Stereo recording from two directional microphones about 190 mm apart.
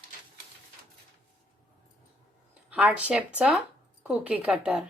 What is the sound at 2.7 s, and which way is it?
A woman's voice, 5° right (ahead or behind).